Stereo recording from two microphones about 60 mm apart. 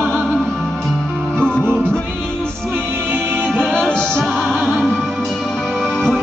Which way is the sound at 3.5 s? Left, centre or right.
Centre.